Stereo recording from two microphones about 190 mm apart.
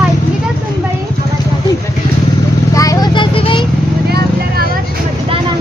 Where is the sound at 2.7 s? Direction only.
20° left (ahead or behind).